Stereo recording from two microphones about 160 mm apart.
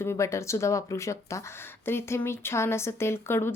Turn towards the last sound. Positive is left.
turn(degrees=15)  # may be behind; listen again after turning